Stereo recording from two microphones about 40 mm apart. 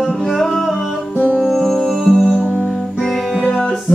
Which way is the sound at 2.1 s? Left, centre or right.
Left.